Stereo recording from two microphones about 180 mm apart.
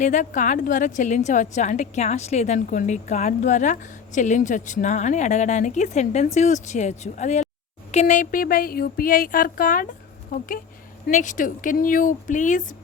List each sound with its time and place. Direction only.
0.0 s a woman's voice: 45° left (ahead or behind)
11.1 s a woman's voice: 45° left (ahead or behind)